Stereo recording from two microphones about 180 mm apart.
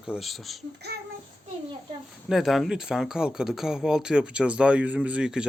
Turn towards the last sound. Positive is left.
turn(degrees=-5)  # may be behind; listen again after turning